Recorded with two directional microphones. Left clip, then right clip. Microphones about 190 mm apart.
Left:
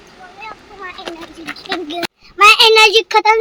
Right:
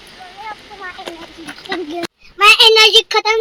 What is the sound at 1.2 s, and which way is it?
Duck, 15° left (ahead or behind).